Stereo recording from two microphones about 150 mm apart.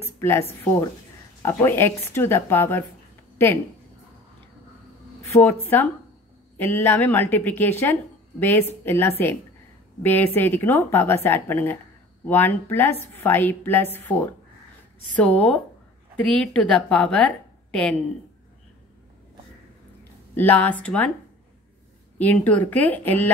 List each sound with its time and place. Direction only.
0.0 s a woman's voice: 15° left (ahead or behind)
5.3 s a woman's voice: 15° left (ahead or behind)
20.3 s a woman's voice: 10° left (ahead or behind)
22.2 s a woman's voice: 10° left (ahead or behind)